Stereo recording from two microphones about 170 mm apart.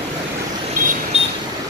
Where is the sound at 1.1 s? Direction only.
35° right (ahead or behind).